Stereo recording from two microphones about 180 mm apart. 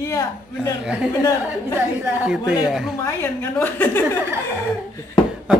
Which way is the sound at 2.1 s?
5° right (ahead or behind).